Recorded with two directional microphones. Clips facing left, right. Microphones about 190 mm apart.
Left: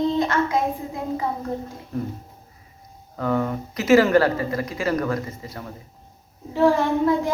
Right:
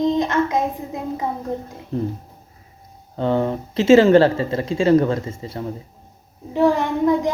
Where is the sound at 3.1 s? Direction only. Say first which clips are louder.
Right 3 dB; 30° right (ahead or behind).